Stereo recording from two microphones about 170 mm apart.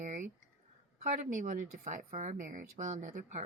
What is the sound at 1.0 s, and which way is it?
A woman's voice, 50° right (ahead or behind).